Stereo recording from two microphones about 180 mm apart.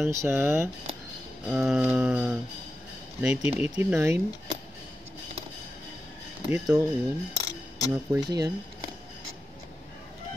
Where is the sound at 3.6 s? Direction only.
10° right (ahead or behind).